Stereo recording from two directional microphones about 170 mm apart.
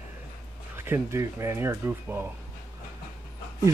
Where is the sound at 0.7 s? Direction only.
15° right (ahead or behind).